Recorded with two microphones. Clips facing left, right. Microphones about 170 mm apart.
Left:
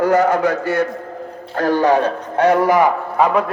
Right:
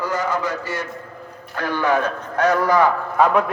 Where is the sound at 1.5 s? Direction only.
40° left (ahead or behind); by 2.9 s 20° left (ahead or behind).